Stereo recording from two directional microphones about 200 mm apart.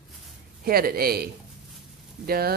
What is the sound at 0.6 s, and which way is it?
Speech, 50° right (ahead or behind).